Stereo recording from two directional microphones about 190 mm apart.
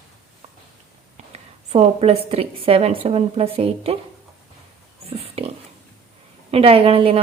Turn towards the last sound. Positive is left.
turn(degrees=-30)  # may be behind; listen again after turning